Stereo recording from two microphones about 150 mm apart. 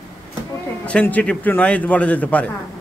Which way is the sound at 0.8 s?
10° left (ahead or behind).